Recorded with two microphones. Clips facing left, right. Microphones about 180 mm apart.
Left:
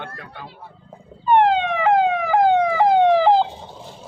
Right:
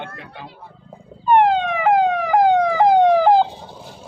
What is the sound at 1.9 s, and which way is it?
Police car, 5° left (ahead or behind).